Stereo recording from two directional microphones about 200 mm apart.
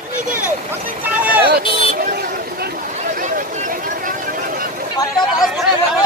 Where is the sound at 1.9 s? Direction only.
45° right (ahead or behind).